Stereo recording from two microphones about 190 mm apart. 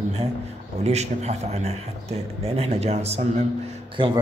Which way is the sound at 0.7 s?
35° right (ahead or behind).